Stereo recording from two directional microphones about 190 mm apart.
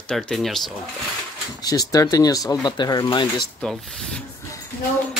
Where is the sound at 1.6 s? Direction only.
20° left (ahead or behind).